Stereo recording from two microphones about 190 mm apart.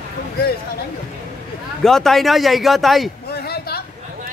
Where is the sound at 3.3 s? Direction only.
55° left (ahead or behind).